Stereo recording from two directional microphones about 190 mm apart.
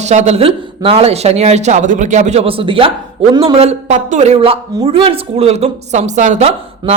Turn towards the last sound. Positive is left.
turn(degrees=-35)  # may be behind; listen again after turning